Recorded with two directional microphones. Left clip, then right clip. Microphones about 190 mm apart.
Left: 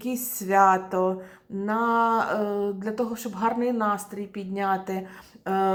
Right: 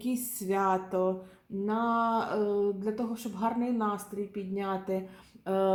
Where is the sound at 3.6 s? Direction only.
20° left (ahead or behind).